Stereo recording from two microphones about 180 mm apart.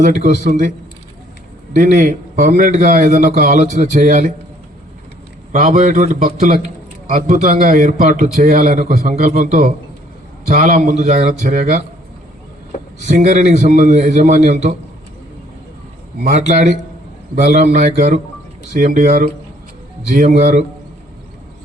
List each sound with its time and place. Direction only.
0.0 s a man's voice: 40° right (ahead or behind)
1.7 s a man's voice: 45° right (ahead or behind)
5.5 s a man's voice: 45° right (ahead or behind)
13.1 s a man's voice: 40° right (ahead or behind)
16.2 s a man's voice: 40° right (ahead or behind)